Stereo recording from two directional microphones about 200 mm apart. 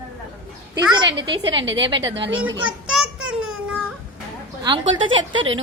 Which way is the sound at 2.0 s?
65° right (ahead or behind).